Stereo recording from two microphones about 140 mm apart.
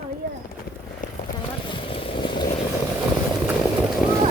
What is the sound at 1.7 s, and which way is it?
Vehicle, 40° left (ahead or behind).